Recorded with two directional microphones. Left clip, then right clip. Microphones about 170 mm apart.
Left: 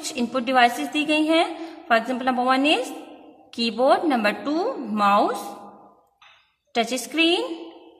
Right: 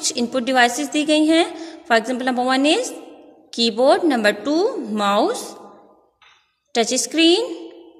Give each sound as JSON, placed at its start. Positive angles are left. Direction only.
{"t": 0.0, "sound": "a woman's voice", "side_deg": -35}
{"t": 6.7, "sound": "a woman's voice", "side_deg": -35}